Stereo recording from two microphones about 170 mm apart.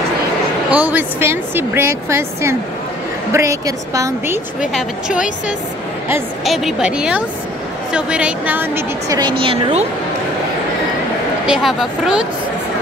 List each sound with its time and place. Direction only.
0.7 s a woman's voice: 10° right (ahead or behind)
4.7 s speech: 5° right (ahead or behind)
6.4 s a woman's voice: centre (ahead or behind)
9.4 s a woman's voice: 35° right (ahead or behind)
11.4 s speech: 5° right (ahead or behind)